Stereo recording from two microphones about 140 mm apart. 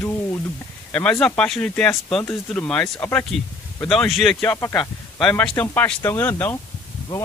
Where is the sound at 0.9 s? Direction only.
5° left (ahead or behind).